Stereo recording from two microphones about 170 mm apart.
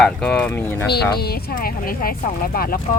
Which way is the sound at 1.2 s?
60° left (ahead or behind).